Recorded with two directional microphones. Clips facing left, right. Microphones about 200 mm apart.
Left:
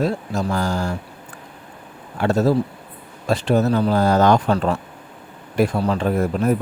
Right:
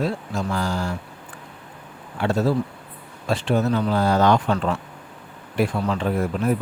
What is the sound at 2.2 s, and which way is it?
Speech, 45° left (ahead or behind).